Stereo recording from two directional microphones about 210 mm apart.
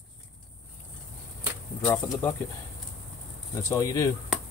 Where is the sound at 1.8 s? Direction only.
15° left (ahead or behind).